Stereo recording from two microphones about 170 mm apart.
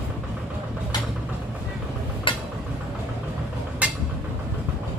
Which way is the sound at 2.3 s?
30° left (ahead or behind).